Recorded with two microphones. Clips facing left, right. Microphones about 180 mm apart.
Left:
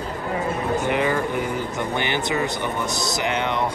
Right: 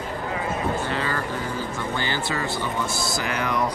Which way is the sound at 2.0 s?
20° left (ahead or behind).